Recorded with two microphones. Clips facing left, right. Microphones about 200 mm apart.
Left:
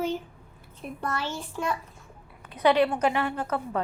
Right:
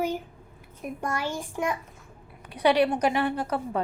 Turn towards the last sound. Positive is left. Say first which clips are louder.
# right 1 dB
turn(degrees=-15)  # may be behind; listen again after turning